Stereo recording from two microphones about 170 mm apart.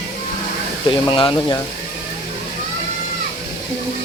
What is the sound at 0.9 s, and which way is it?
Speech, 30° left (ahead or behind).